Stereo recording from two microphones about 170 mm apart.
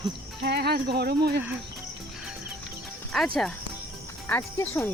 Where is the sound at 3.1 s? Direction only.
Centre (ahead or behind).